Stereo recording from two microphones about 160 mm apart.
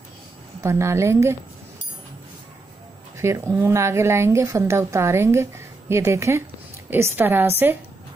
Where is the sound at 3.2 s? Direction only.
15° right (ahead or behind).